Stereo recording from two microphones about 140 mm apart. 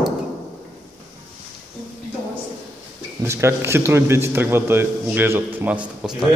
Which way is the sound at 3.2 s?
20° right (ahead or behind).